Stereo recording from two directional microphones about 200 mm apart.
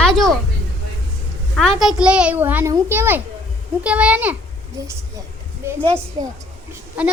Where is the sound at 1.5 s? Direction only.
Centre (ahead or behind).